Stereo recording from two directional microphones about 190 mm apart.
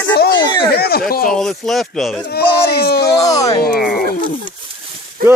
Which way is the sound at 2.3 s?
55° left (ahead or behind).